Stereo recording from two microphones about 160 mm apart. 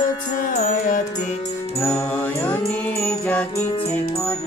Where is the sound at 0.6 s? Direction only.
50° left (ahead or behind).